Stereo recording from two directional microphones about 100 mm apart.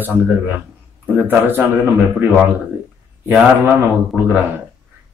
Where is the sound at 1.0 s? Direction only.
20° right (ahead or behind).